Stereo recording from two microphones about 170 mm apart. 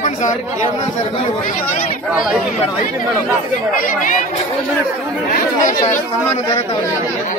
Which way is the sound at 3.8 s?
50° left (ahead or behind).